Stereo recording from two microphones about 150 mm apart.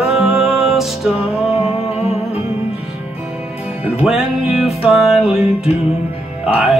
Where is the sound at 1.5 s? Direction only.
45° left (ahead or behind).